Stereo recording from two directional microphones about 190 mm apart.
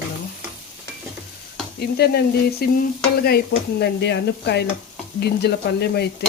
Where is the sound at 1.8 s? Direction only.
55° left (ahead or behind).